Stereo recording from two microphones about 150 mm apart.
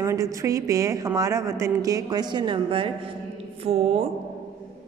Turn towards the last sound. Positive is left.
turn(degrees=-45)  # may be behind; listen again after turning